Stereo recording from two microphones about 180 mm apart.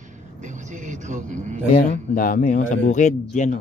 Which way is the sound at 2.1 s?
45° left (ahead or behind).